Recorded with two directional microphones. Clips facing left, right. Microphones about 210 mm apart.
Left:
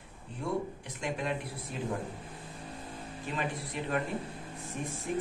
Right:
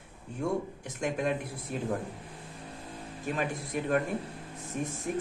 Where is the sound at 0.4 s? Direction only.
45° right (ahead or behind).